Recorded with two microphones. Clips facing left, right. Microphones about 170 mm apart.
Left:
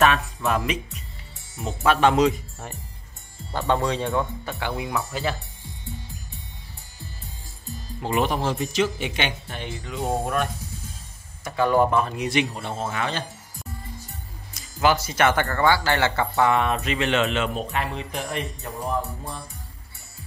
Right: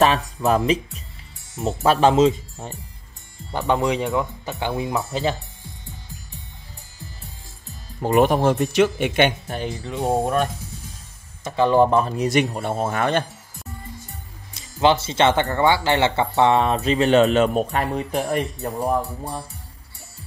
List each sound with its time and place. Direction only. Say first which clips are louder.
0.0 s speech: right 3 dB; 35° right (ahead or behind)
8.0 s speech: right 7 dB; 50° right (ahead or behind)
10.0 s speech: right 5 dB; 20° right (ahead or behind)
11.4 s speech: right 3 dB; 25° right (ahead or behind); by 13.2 s 55° right (ahead or behind)
14.5 s speech: right 3 dB; 25° right (ahead or behind)
18.8 s speech: right 5 dB; 60° right (ahead or behind)